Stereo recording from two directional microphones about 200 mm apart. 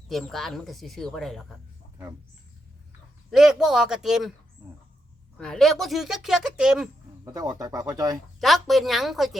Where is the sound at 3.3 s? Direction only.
Centre (ahead or behind).